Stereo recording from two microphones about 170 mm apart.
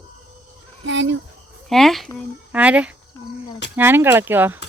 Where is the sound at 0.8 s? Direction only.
90° right.